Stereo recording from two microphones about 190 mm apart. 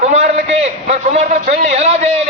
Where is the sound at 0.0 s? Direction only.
35° right (ahead or behind).